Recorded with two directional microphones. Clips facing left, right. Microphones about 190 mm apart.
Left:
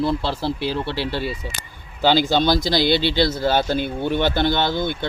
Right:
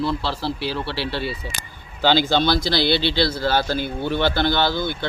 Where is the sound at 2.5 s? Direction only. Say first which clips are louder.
Left 2 dB; 15° left (ahead or behind).